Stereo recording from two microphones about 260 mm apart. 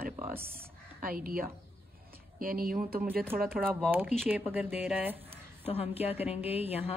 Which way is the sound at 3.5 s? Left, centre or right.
Centre.